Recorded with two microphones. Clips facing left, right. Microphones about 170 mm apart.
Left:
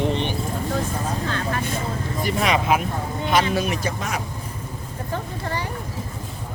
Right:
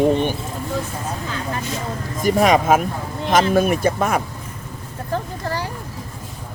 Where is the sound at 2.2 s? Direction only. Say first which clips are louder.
Right 7 dB; 45° right (ahead or behind).